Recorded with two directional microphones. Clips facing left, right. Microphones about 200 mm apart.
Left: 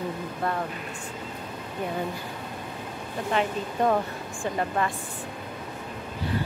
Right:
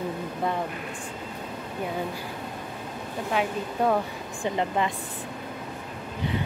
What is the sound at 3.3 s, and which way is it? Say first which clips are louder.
Speech: left 1 dB; 5° right (ahead or behind).